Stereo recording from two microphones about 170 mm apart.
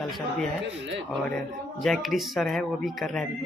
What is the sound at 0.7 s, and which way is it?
Speech, 90° right.